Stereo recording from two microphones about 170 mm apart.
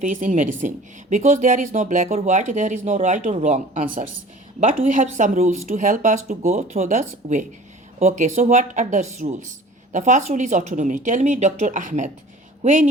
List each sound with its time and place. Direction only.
0.0 s speech: 50° right (ahead or behind)